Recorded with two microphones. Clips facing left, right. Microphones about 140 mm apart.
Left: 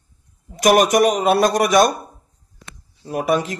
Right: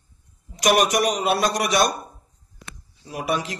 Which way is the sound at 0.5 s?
45° left (ahead or behind).